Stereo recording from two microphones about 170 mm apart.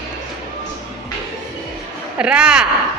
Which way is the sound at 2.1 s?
5° right (ahead or behind).